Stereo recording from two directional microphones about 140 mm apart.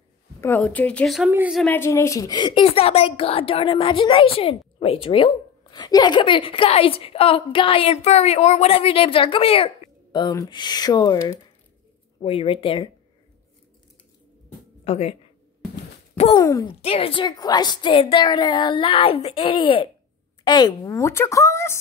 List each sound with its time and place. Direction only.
0.6 s a woman's voice: 10° left (ahead or behind)
1.7 s speech: 20° left (ahead or behind)
2.6 s a woman's voice: 45° left (ahead or behind)
10.1 s a woman's voice: 30° left (ahead or behind)
12.2 s a woman's voice: 45° left (ahead or behind)
14.9 s speech: 50° left (ahead or behind)
16.3 s speech: 30° left (ahead or behind)
16.8 s a woman's voice: 40° left (ahead or behind); by 21.7 s 20° left (ahead or behind)